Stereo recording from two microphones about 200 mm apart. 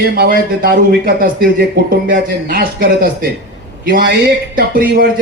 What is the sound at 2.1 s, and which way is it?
Speech, 45° right (ahead or behind).